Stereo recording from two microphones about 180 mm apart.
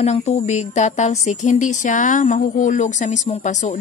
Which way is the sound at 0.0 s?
35° left (ahead or behind).